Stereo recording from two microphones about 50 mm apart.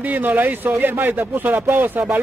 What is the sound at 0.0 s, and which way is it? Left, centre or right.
A man's voice, right.